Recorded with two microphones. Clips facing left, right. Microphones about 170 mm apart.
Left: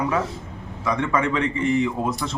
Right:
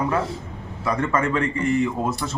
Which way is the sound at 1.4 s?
45° right (ahead or behind).